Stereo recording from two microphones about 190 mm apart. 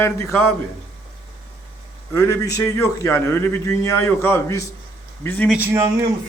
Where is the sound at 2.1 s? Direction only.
15° left (ahead or behind).